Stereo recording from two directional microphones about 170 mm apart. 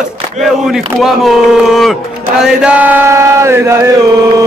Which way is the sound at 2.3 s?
5° right (ahead or behind).